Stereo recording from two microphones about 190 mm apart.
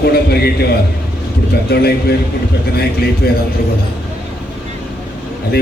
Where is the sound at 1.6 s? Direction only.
55° left (ahead or behind).